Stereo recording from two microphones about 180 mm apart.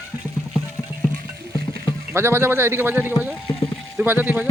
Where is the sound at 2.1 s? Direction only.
15° right (ahead or behind).